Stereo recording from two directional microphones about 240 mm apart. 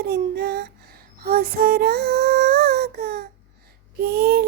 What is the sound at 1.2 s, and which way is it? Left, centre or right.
Child singing, right.